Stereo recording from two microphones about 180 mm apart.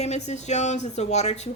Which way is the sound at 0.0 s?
40° left (ahead or behind).